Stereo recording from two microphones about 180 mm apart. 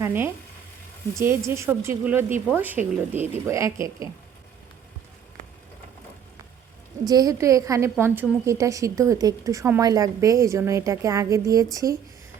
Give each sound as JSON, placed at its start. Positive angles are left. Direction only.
{"t": 0.0, "sound": "frying", "side_deg": -10}
{"t": 1.2, "sound": "a woman's voice", "side_deg": -15}
{"t": 7.1, "sound": "a woman's voice", "side_deg": -20}